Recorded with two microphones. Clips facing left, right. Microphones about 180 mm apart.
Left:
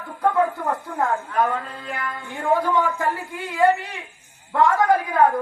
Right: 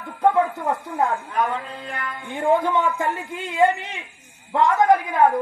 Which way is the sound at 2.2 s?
20° right (ahead or behind).